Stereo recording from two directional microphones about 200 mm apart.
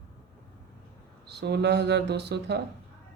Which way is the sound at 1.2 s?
55° right (ahead or behind).